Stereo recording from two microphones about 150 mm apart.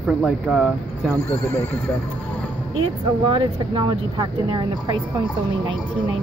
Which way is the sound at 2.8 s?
35° right (ahead or behind).